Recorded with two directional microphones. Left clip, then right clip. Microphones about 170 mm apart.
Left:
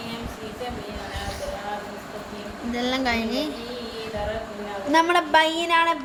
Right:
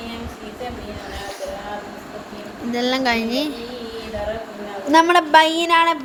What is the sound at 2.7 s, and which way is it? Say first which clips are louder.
Speech: right 5 dB; 25° right (ahead or behind).